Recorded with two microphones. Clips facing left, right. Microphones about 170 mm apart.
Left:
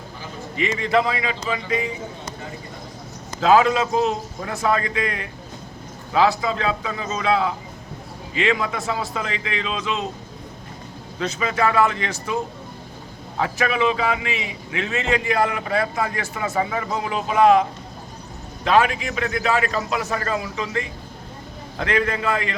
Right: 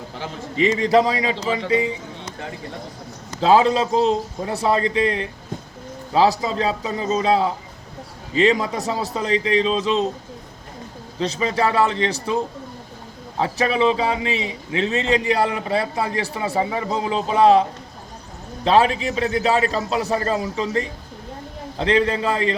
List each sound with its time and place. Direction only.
0.5 s a man's voice: 35° right (ahead or behind)
3.4 s a man's voice: 30° right (ahead or behind)
11.2 s a man's voice: 30° right (ahead or behind)
13.4 s a man's voice: 30° right (ahead or behind)